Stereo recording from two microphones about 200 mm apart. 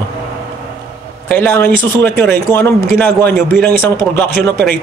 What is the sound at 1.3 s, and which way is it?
A man's voice, 10° left (ahead or behind).